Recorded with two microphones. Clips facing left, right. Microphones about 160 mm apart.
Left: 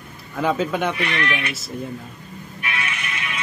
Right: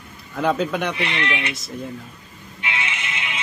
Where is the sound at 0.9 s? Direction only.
25° right (ahead or behind).